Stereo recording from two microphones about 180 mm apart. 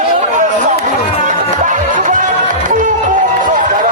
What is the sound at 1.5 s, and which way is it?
Music, 45° right (ahead or behind).